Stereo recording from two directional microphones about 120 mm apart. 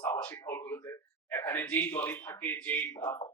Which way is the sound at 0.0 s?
15° left (ahead or behind).